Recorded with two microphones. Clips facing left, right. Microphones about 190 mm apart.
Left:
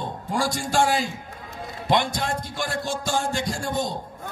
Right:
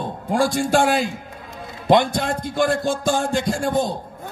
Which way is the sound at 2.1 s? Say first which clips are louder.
Right 7 dB; 55° right (ahead or behind).